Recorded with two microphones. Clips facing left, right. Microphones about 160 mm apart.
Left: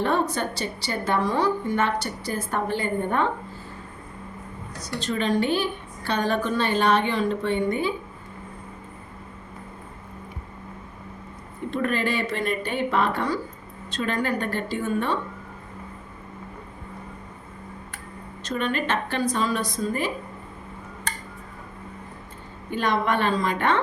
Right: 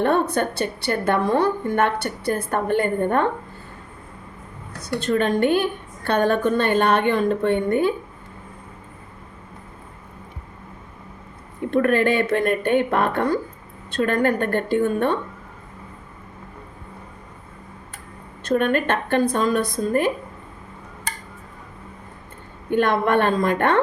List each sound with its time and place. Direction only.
0.0 s a woman's voice: 55° right (ahead or behind)
4.8 s a woman's voice: 55° right (ahead or behind)
11.7 s a woman's voice: 55° right (ahead or behind)
18.4 s a woman's voice: 55° right (ahead or behind)
22.7 s a woman's voice: 55° right (ahead or behind)